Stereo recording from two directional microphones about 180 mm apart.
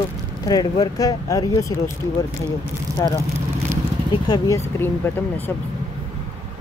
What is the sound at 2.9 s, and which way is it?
Vehicle, 15° right (ahead or behind).